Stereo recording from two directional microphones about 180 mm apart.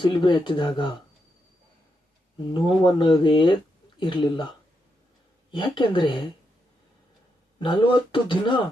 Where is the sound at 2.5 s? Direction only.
25° left (ahead or behind).